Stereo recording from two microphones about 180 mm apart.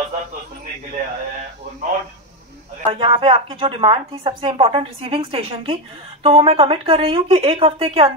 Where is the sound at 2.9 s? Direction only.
30° right (ahead or behind).